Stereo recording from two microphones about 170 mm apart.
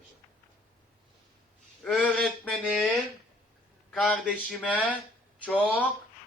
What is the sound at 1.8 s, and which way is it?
Speech, 5° left (ahead or behind).